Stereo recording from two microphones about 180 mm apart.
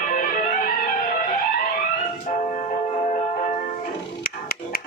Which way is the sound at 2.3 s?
40° left (ahead or behind).